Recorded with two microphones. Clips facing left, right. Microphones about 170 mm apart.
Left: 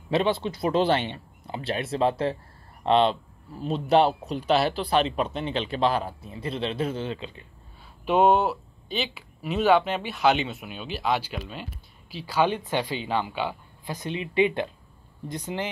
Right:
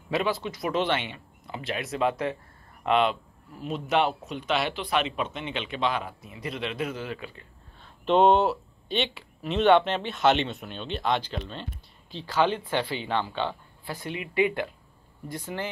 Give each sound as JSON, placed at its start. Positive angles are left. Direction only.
{"t": 0.1, "sound": "speech", "side_deg": 25}
{"t": 8.0, "sound": "speech", "side_deg": 5}